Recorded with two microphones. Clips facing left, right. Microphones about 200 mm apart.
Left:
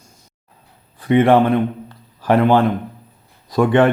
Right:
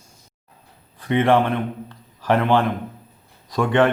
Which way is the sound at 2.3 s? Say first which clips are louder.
Left 4 dB; 40° left (ahead or behind).